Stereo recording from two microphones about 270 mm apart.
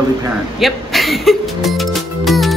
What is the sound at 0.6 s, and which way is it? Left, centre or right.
Music, centre.